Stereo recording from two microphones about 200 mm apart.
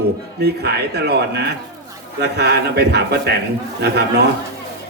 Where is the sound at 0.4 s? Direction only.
55° right (ahead or behind).